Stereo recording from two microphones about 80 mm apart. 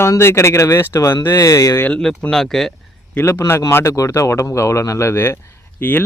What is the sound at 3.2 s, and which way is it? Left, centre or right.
Speech, left.